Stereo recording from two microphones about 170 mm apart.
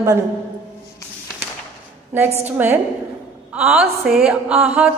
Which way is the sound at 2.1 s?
10° right (ahead or behind).